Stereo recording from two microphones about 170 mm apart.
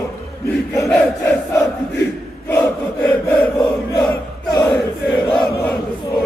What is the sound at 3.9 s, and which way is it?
Crowd, 20° left (ahead or behind).